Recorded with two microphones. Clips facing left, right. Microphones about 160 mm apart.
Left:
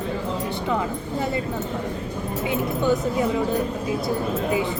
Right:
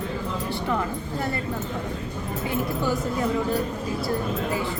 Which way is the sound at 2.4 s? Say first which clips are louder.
Left 4 dB; 20° left (ahead or behind).